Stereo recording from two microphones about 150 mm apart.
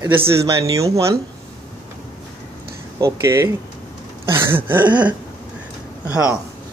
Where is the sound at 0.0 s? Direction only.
15° right (ahead or behind).